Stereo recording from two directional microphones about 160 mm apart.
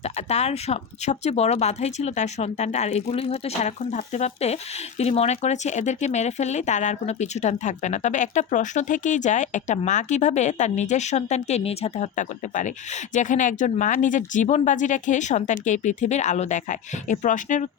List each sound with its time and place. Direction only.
0.3 s speech: 45° left (ahead or behind)